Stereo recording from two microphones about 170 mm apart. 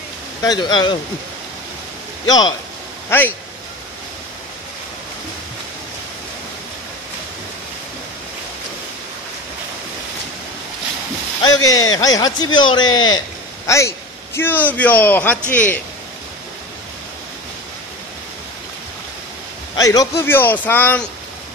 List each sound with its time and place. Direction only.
0.4 s speech: 25° left (ahead or behind)
2.2 s speech: 25° left (ahead or behind)
3.1 s a man's voice: 10° left (ahead or behind)
11.4 s a man's voice: 20° left (ahead or behind)
19.7 s a man's voice: 20° left (ahead or behind)